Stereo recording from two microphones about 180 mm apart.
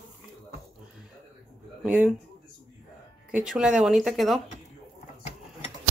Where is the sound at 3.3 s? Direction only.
5° right (ahead or behind).